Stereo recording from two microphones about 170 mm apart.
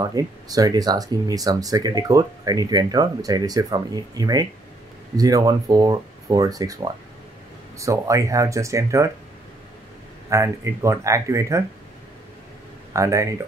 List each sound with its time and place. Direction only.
0.0 s speech: 20° right (ahead or behind)
10.3 s speech: 15° right (ahead or behind)
12.9 s speech: 20° right (ahead or behind)